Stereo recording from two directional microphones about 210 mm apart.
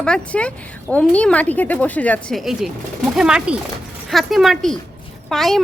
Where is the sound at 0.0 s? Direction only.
5° left (ahead or behind).